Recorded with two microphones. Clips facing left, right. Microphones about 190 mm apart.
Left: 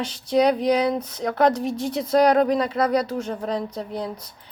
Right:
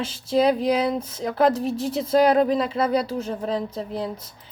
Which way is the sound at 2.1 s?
5° right (ahead or behind).